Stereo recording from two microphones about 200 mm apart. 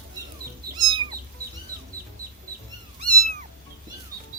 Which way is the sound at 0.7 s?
20° right (ahead or behind).